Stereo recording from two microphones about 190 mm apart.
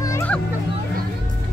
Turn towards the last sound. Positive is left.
turn(degrees=10)  # may be behind; listen again after turning